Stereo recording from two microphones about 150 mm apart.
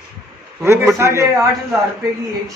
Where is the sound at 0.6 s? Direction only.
20° right (ahead or behind).